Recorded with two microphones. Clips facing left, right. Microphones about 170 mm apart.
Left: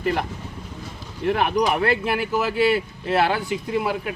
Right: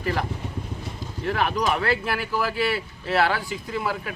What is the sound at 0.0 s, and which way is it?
Speech, 20° left (ahead or behind).